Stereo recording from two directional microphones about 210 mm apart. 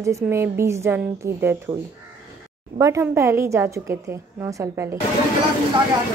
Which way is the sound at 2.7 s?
15° right (ahead or behind).